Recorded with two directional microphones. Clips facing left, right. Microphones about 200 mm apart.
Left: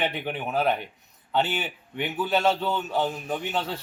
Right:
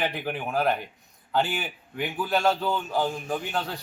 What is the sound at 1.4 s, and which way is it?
Speech, 25° left (ahead or behind).